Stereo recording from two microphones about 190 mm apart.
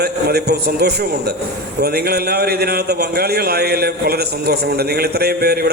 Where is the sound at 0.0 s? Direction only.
55° right (ahead or behind).